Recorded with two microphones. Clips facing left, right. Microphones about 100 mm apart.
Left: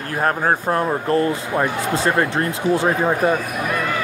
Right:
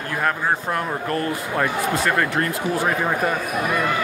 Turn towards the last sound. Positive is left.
turn(degrees=25)  # may be behind; listen again after turning